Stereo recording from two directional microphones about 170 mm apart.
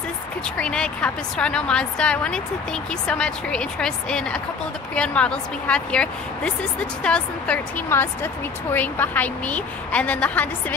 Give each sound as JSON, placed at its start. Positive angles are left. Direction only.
{"t": 0.6, "sound": "a woman's voice", "side_deg": 5}